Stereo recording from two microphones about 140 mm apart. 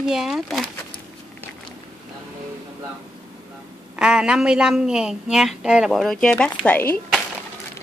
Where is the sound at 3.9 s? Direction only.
5° right (ahead or behind).